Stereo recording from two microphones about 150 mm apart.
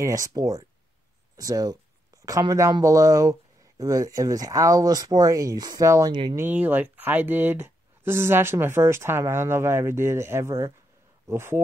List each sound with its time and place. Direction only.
0.0 s speech: 20° right (ahead or behind)